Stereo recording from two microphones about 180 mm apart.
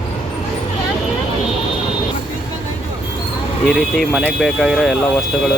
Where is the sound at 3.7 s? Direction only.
Centre (ahead or behind).